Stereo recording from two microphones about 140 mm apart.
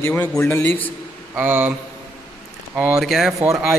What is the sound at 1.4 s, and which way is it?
Speech, 15° right (ahead or behind).